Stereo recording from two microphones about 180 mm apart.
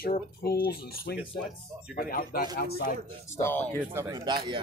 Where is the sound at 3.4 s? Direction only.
10° left (ahead or behind).